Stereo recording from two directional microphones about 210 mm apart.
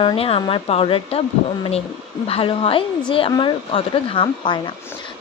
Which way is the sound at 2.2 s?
25° left (ahead or behind).